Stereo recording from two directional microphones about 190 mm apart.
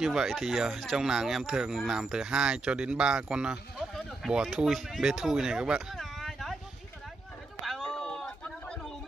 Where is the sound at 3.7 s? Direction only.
Centre (ahead or behind).